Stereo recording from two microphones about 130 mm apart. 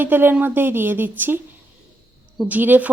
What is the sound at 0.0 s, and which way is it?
A woman's voice, 15° right (ahead or behind).